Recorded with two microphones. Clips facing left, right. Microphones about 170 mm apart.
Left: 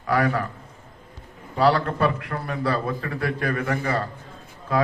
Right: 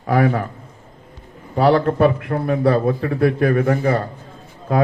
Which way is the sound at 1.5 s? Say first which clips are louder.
Right 5 dB; 50° right (ahead or behind).